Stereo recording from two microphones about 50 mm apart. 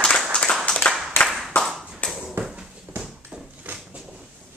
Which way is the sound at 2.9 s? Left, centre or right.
Right.